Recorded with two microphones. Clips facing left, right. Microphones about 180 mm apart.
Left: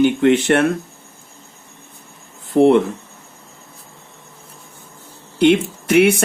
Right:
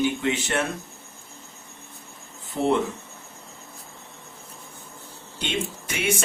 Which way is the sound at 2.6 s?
65° left (ahead or behind).